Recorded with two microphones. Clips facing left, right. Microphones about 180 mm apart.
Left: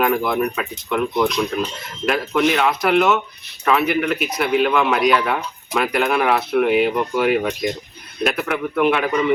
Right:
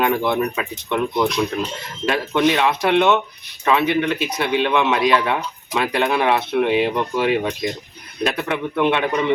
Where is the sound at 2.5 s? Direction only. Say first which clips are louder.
Even; 25° right (ahead or behind).